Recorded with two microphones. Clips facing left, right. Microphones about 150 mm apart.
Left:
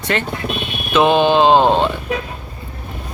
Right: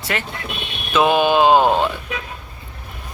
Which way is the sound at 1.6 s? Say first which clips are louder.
Left 2 dB; 25° left (ahead or behind).